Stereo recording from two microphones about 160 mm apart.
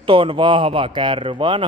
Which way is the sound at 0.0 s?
35° right (ahead or behind).